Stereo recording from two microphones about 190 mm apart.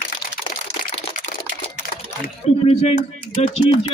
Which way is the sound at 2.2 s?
35° left (ahead or behind).